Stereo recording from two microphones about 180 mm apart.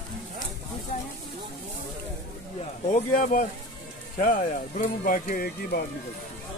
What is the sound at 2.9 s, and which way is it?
Speech, 50° left (ahead or behind).